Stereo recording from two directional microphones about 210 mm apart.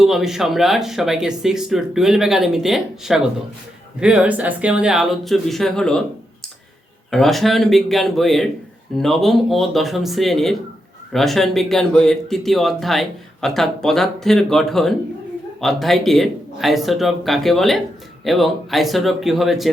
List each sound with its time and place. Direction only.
0.0 s speech: centre (ahead or behind)
7.1 s speech: centre (ahead or behind)